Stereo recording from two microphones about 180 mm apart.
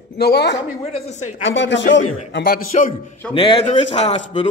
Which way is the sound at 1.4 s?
90° left.